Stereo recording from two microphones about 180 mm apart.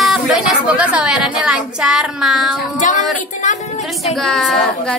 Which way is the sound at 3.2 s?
45° left (ahead or behind).